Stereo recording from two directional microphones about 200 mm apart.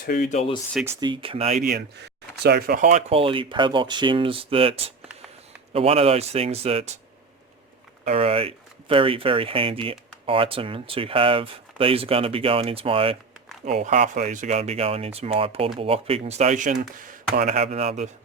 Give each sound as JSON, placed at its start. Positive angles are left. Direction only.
{"t": 0.0, "sound": "speech", "side_deg": 45}
{"t": 0.3, "sound": "speech", "side_deg": 25}
{"t": 0.7, "sound": "speech", "side_deg": -5}
{"t": 0.9, "sound": "speech", "side_deg": -20}
{"t": 2.4, "sound": "speech", "side_deg": -50}
{"t": 3.1, "sound": "speech", "side_deg": -25}
{"t": 8.0, "sound": "speech", "side_deg": -30}
{"t": 17.6, "sound": "speech", "side_deg": -35}